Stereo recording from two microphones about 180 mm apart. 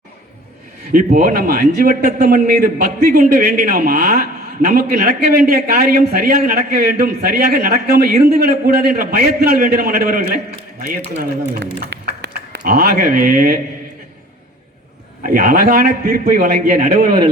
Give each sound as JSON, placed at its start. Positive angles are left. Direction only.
{"t": 0.9, "sound": "a man's voice", "side_deg": -50}
{"t": 11.9, "sound": "a sound", "side_deg": -75}
{"t": 12.5, "sound": "speech", "side_deg": -60}
{"t": 15.3, "sound": "a man's voice", "side_deg": -55}